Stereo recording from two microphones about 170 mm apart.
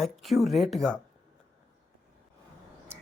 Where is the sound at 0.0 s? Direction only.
Centre (ahead or behind).